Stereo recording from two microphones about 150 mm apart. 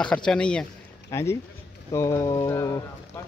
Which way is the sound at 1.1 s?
20° left (ahead or behind).